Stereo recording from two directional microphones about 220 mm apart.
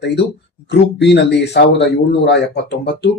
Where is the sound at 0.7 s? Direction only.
50° left (ahead or behind).